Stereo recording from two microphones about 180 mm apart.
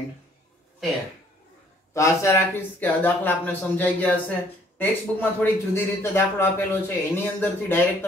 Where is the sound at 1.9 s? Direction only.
15° left (ahead or behind).